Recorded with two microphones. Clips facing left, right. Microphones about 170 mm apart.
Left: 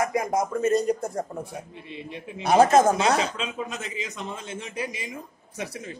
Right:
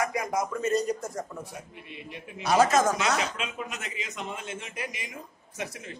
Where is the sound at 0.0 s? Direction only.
25° left (ahead or behind).